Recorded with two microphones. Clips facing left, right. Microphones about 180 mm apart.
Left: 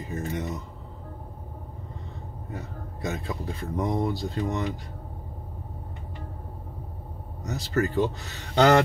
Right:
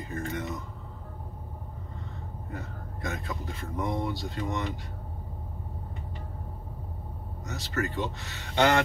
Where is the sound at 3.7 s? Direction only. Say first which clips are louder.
Left 4 dB; 40° left (ahead or behind).